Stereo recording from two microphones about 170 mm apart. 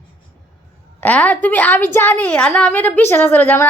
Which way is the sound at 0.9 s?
10° left (ahead or behind).